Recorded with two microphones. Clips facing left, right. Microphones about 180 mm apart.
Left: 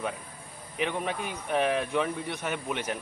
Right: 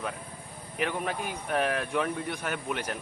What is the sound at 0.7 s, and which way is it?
A man's voice, 5° right (ahead or behind).